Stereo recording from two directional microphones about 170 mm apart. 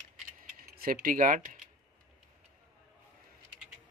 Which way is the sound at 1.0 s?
50° right (ahead or behind).